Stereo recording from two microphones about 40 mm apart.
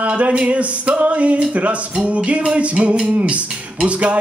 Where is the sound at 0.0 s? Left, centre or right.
Right.